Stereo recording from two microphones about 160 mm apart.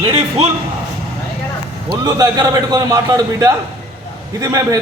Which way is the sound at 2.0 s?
25° right (ahead or behind).